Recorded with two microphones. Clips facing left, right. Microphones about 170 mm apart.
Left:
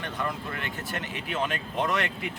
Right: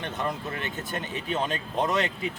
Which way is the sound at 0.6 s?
20° right (ahead or behind).